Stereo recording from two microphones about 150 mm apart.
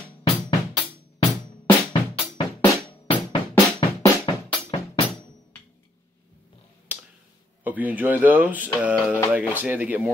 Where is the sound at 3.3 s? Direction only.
30° left (ahead or behind).